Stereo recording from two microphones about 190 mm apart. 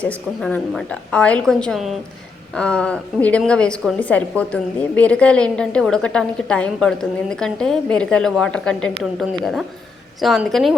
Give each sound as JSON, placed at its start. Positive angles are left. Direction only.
{"t": 0.0, "sound": "a woman's voice", "side_deg": 5}